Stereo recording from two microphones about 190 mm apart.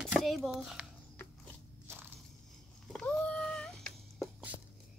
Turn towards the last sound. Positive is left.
turn(degrees=0)  # may be behind; listen again after turning